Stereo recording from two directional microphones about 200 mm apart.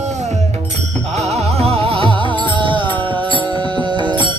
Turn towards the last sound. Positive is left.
turn(degrees=-25)  # may be behind; listen again after turning